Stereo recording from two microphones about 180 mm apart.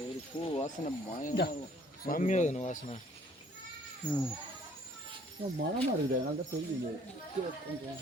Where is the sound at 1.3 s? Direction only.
65° left (ahead or behind).